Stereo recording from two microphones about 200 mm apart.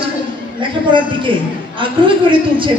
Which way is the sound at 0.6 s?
25° right (ahead or behind).